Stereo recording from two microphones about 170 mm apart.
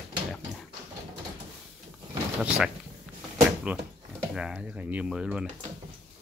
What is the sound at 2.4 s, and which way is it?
Speech, 5° right (ahead or behind).